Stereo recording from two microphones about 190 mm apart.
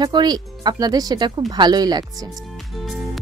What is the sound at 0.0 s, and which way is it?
Speech, 20° right (ahead or behind).